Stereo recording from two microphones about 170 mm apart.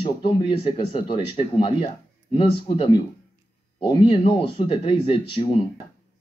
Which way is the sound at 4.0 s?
30° left (ahead or behind).